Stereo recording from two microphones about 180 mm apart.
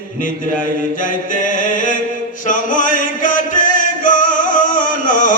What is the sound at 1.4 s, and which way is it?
Music, 45° left (ahead or behind).